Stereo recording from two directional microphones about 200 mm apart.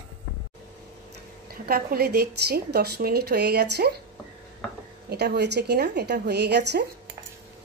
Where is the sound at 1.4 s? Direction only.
50° right (ahead or behind).